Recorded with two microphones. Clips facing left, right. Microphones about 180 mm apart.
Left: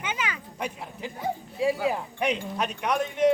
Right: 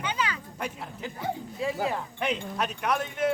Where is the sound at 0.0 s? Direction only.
20° left (ahead or behind).